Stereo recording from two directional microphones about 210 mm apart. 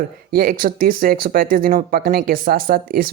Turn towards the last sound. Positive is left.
turn(degrees=-45)  # may be behind; listen again after turning